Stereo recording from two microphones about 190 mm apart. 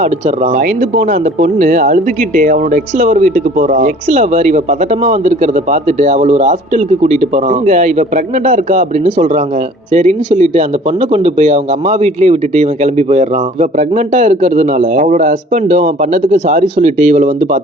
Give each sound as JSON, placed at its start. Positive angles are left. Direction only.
{"t": 0.0, "sound": "speech", "side_deg": -40}